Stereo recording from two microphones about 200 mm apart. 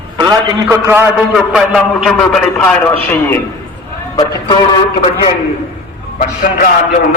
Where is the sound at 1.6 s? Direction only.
Centre (ahead or behind).